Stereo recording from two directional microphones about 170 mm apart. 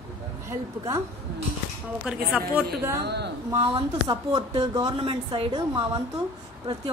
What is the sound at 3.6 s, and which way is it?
A woman's voice, 30° right (ahead or behind).